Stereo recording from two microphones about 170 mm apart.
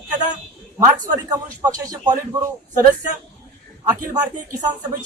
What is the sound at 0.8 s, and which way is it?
A man's voice, 20° right (ahead or behind).